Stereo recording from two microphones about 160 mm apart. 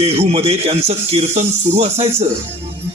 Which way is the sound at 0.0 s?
40° right (ahead or behind).